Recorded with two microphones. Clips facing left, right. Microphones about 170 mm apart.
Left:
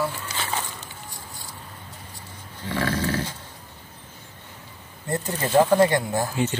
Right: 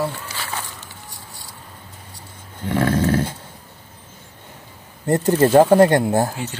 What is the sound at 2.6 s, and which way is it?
Speech, 50° right (ahead or behind).